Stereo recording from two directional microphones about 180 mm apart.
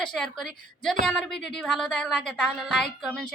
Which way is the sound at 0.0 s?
5° left (ahead or behind).